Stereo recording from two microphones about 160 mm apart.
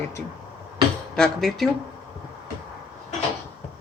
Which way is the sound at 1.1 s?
Centre (ahead or behind).